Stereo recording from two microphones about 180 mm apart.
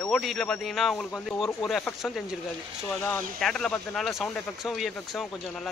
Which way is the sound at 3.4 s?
5° left (ahead or behind).